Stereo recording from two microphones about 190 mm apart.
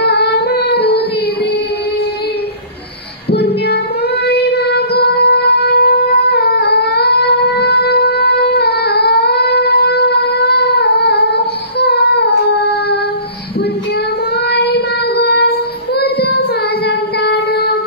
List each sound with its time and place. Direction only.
0.0 s female singing: 60° left (ahead or behind)
3.3 s music: 60° left (ahead or behind)
4.3 s wind instrument: 60° left (ahead or behind)
14.5 s child singing: 60° left (ahead or behind)